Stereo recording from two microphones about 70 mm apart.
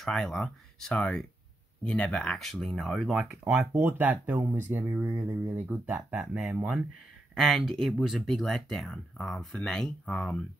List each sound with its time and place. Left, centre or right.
0.0 s speech: centre
3.7 s speech: right
4.4 s speech: right; by 6.6 s centre
7.3 s speech: centre